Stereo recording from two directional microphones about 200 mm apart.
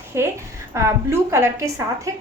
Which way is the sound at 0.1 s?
15° right (ahead or behind).